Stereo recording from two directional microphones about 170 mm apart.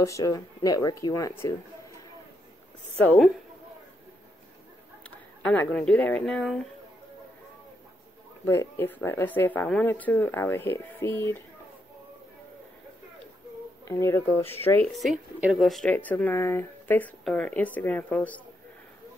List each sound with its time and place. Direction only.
0.0 s speech: 20° left (ahead or behind)
3.0 s speech: 10° left (ahead or behind)
5.4 s speech: 5° left (ahead or behind)
8.5 s speech: 15° left (ahead or behind)
13.8 s speech: 15° left (ahead or behind)
15.0 s speech: centre (ahead or behind)